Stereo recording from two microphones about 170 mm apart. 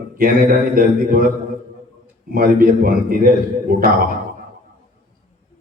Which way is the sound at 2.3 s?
55° right (ahead or behind).